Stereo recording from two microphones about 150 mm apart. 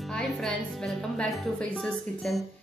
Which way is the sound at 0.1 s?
5° left (ahead or behind).